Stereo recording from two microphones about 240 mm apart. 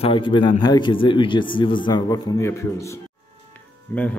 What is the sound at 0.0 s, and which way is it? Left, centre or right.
A man's voice, left.